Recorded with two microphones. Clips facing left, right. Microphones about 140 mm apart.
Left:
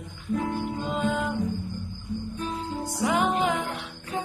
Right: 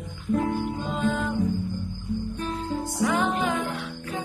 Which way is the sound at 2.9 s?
15° left (ahead or behind).